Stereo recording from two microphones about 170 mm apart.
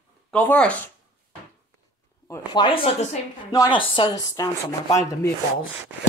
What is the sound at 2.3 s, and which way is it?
Speech, 25° left (ahead or behind).